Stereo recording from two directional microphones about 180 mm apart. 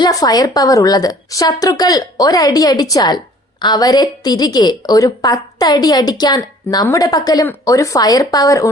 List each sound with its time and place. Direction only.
0.0 s a woman's voice: 20° left (ahead or behind)